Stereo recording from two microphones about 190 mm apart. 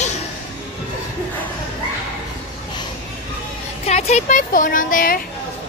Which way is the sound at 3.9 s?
35° left (ahead or behind).